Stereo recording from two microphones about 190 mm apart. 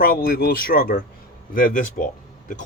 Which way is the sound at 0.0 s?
50° left (ahead or behind).